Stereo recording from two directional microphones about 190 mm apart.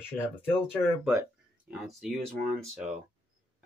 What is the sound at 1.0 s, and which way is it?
Speech, 5° right (ahead or behind).